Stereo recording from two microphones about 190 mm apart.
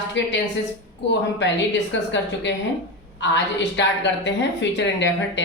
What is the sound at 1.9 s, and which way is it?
Speech, 75° left (ahead or behind).